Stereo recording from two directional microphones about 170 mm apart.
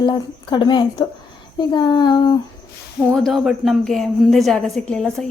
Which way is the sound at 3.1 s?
Centre (ahead or behind).